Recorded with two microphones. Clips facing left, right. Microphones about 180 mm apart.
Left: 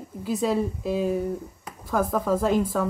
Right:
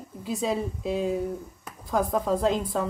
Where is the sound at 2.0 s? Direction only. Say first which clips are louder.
Left 1 dB; centre (ahead or behind).